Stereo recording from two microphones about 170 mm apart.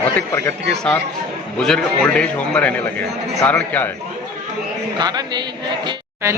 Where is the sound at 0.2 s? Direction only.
15° left (ahead or behind).